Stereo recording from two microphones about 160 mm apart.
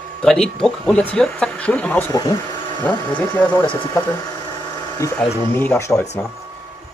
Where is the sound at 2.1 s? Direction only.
25° left (ahead or behind).